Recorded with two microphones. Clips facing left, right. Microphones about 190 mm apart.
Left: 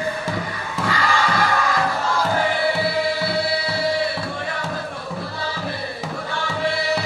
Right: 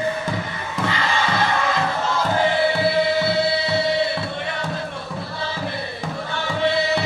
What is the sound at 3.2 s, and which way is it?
Music, 25° right (ahead or behind).